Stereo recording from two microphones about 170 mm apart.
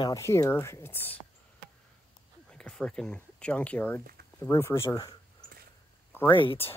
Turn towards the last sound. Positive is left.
turn(degrees=30)  # may be behind; listen again after turning